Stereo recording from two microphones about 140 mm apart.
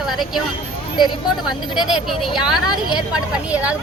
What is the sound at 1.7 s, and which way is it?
Speech, 5° right (ahead or behind).